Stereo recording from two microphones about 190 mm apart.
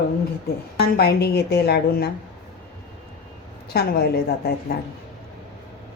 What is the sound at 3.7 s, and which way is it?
Speech, 55° left (ahead or behind).